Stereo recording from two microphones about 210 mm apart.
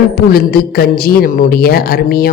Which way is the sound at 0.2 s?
45° left (ahead or behind).